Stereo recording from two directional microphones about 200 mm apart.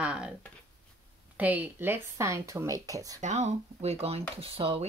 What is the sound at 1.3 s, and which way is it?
Speech, 10° right (ahead or behind).